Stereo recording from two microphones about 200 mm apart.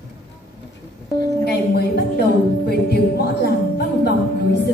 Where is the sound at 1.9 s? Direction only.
55° left (ahead or behind).